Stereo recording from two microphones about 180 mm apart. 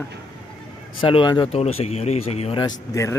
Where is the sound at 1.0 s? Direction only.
30° left (ahead or behind).